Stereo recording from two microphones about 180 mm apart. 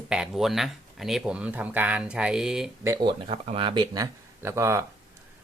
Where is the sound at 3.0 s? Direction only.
30° right (ahead or behind); by 4.8 s 15° right (ahead or behind).